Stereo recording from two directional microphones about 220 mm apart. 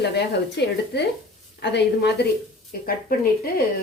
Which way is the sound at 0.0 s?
50° left (ahead or behind).